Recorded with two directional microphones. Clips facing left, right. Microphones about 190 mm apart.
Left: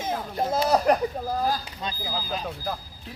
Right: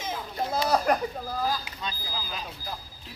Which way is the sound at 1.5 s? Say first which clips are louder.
Left 3 dB; 40° left (ahead or behind).